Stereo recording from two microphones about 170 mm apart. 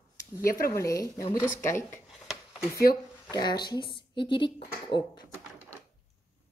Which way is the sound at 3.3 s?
25° left (ahead or behind).